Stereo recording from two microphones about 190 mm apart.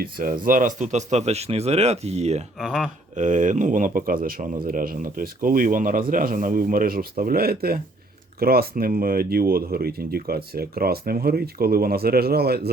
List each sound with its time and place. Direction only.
0.0 s speech: 45° right (ahead or behind)
2.6 s speech: 5° right (ahead or behind)
3.2 s speech: 40° right (ahead or behind)